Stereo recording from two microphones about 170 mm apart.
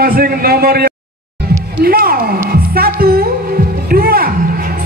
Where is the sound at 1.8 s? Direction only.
60° right (ahead or behind).